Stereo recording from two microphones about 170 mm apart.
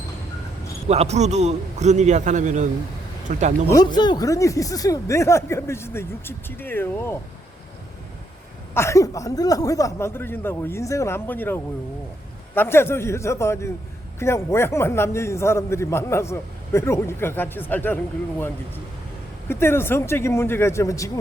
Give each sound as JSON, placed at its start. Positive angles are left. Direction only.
{"t": 0.9, "sound": "a man's voice", "side_deg": -40}
{"t": 3.7, "sound": "a man's voice", "side_deg": 25}
{"t": 8.7, "sound": "a man's voice", "side_deg": 15}